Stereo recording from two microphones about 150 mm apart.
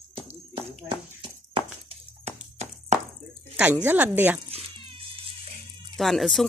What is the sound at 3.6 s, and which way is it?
Speech, 10° right (ahead or behind).